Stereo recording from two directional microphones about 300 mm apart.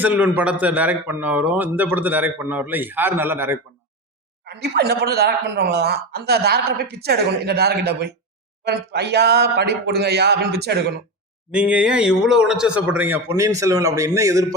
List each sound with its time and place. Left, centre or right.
0.0 s a man's voice: centre
4.4 s speech: right
11.5 s speech: centre